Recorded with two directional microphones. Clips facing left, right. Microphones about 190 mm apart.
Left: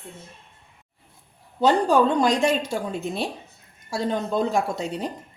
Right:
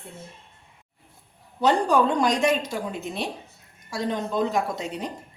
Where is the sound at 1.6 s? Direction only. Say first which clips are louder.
Left 2 dB; 30° left (ahead or behind).